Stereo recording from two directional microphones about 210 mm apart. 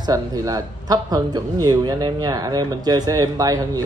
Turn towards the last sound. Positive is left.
turn(degrees=-15)  # may be behind; listen again after turning